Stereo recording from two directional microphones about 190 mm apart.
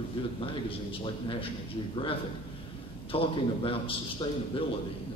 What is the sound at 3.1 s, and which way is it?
Speech, 30° left (ahead or behind).